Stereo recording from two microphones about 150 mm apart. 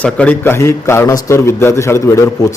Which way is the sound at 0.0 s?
10° left (ahead or behind).